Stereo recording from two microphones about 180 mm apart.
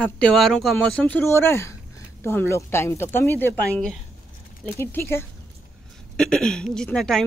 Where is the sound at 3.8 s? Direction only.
Centre (ahead or behind).